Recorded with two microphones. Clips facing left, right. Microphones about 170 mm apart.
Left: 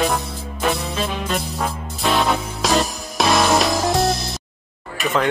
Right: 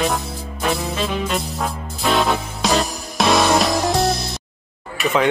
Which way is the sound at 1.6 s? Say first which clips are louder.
Even; centre (ahead or behind).